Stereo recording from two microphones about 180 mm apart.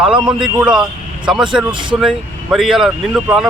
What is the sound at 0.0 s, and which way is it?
Speech, 5° right (ahead or behind).